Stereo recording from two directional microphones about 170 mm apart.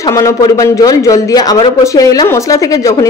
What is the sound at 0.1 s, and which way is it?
Speech, 20° left (ahead or behind).